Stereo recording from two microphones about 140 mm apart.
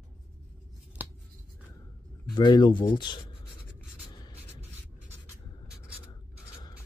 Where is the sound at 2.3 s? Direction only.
30° left (ahead or behind).